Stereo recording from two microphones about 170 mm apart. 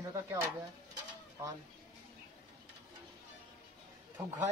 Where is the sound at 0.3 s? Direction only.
15° right (ahead or behind).